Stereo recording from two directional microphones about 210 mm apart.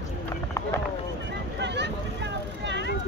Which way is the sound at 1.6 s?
55° right (ahead or behind).